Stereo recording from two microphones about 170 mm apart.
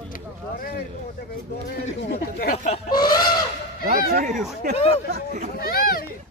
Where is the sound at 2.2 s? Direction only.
60° left (ahead or behind).